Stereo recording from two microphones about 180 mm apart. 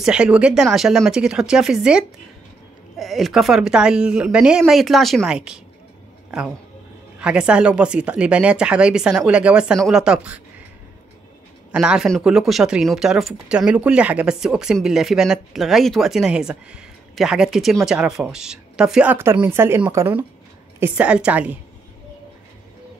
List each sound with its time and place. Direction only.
0.0 s speech: 5° right (ahead or behind)
11.7 s speech: 5° right (ahead or behind)